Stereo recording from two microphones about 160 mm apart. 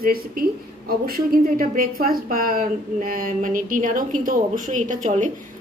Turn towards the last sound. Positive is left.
turn(degrees=-50)  # may be behind; listen again after turning